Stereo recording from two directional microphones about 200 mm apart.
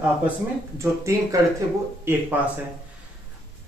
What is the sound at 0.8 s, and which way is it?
Speech, 15° right (ahead or behind).